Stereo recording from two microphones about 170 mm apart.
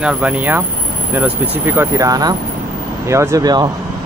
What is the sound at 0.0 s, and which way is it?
Speech, 5° right (ahead or behind).